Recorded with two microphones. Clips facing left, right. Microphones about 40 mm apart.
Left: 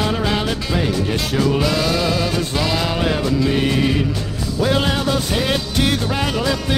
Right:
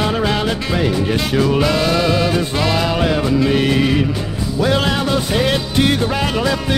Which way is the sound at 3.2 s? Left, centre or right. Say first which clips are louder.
Right 3 dB; centre.